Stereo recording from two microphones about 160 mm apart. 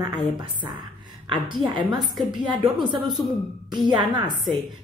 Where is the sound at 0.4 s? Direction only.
30° right (ahead or behind).